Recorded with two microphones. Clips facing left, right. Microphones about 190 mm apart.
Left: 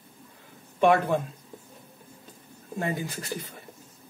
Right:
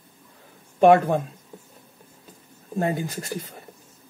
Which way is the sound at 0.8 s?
45° right (ahead or behind).